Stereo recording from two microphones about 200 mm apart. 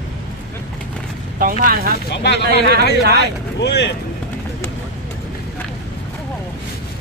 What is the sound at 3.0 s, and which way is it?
Speech, 55° right (ahead or behind).